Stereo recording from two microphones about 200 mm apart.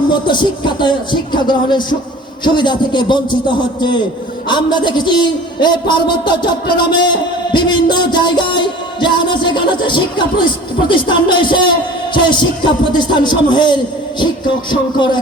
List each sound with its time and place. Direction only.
0.1 s a man's voice: 20° left (ahead or behind)